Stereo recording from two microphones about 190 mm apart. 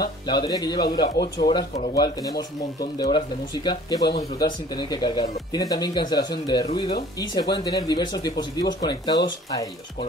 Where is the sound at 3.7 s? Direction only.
20° left (ahead or behind).